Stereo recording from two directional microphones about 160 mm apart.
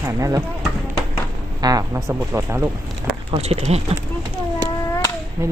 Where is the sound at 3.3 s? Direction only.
40° right (ahead or behind).